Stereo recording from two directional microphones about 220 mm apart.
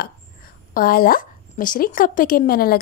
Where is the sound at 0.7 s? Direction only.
40° left (ahead or behind).